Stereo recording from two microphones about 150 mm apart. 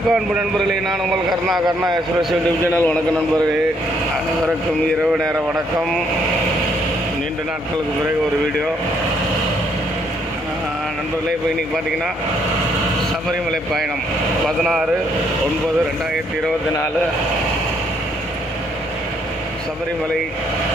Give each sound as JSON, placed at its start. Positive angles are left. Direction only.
{"t": 0.1, "sound": "a man's voice", "side_deg": 0}
{"t": 2.6, "sound": "a man's voice", "side_deg": 15}
{"t": 14.6, "sound": "a man's voice", "side_deg": 0}